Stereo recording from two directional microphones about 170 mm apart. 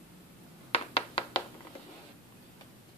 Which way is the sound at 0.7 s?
35° left (ahead or behind).